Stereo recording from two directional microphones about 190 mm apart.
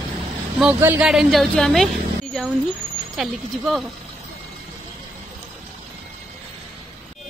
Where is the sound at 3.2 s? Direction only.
Centre (ahead or behind).